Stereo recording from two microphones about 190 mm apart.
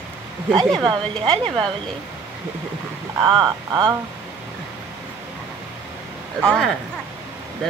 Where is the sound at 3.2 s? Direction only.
20° right (ahead or behind).